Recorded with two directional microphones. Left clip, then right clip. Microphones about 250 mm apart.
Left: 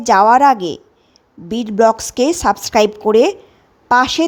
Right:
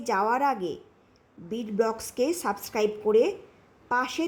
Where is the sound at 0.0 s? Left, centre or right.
Left.